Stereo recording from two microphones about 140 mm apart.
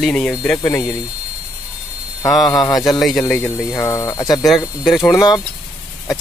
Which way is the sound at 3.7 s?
20° left (ahead or behind).